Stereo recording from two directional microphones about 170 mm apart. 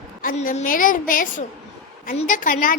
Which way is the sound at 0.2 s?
55° left (ahead or behind).